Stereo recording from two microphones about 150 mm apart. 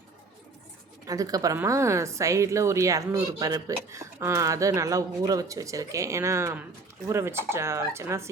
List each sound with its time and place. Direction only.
1.0 s a woman's voice: 25° right (ahead or behind)